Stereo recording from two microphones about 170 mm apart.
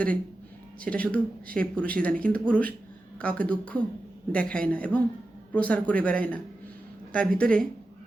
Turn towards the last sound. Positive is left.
turn(degrees=5)  # may be behind; listen again after turning